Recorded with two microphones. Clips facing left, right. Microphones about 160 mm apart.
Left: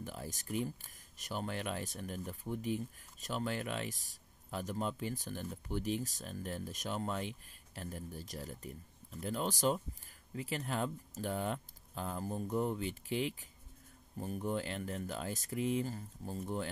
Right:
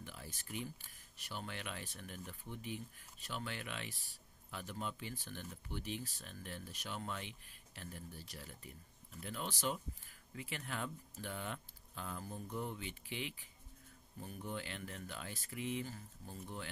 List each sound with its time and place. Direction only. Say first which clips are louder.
0.0 s speech: left 8 dB; 40° left (ahead or behind)